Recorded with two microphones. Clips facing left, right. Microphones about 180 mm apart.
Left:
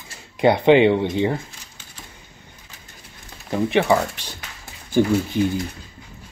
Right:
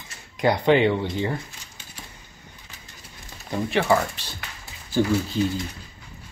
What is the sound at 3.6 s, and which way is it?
Speech, 20° left (ahead or behind).